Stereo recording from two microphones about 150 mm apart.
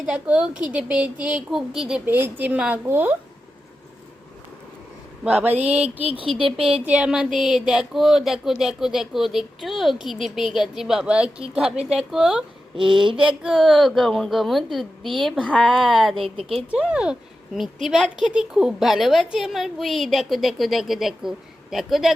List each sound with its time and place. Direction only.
0.0 s a woman's voice: 5° right (ahead or behind)
5.2 s a woman's voice: 10° right (ahead or behind)
5.5 s a sound: 45° right (ahead or behind)
6.1 s speech: 35° right (ahead or behind)
6.8 s speech: 5° right (ahead or behind)